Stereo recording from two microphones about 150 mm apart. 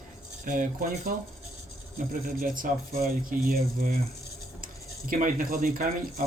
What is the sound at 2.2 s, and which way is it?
Speech, 65° right (ahead or behind).